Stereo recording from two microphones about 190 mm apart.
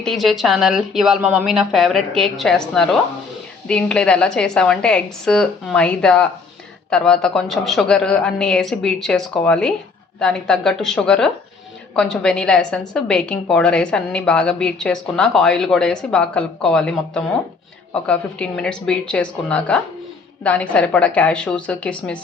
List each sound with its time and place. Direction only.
0.0 s a woman's voice: centre (ahead or behind)